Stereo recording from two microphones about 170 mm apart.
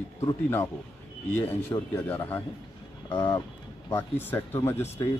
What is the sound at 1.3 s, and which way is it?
Speech, 15° left (ahead or behind).